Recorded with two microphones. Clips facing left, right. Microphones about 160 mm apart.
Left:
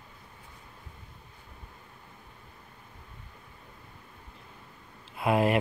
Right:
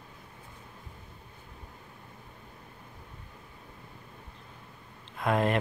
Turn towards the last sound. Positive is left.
turn(degrees=10)  # may be behind; listen again after turning